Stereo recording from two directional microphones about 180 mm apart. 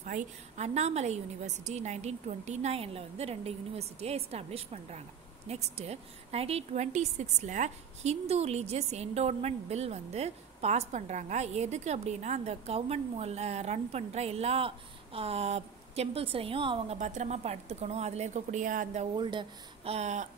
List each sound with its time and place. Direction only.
0.0 s a woman's voice: 45° right (ahead or behind)
19.1 s a woman's voice: 25° right (ahead or behind)